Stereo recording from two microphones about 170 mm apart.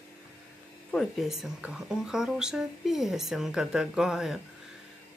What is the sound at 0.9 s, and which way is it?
Speech, centre (ahead or behind).